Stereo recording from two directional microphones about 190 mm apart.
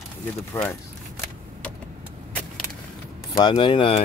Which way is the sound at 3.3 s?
25° left (ahead or behind).